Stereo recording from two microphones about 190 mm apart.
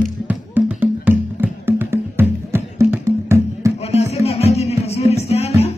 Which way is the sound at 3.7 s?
35° left (ahead or behind).